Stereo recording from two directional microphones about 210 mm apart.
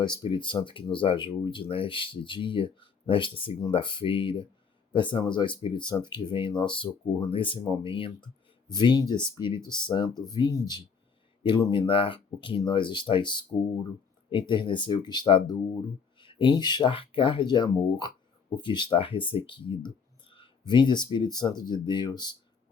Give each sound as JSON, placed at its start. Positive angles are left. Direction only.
{"t": 0.0, "sound": "speech", "side_deg": 20}